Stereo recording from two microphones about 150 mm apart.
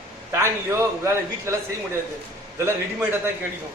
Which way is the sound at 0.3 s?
20° right (ahead or behind).